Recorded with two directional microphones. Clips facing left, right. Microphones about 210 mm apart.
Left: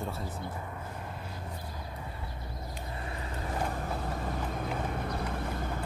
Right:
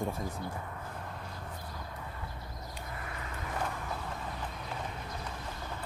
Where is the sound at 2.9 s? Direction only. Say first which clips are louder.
Left 3 dB; 25° left (ahead or behind); by 5.7 s 55° left (ahead or behind).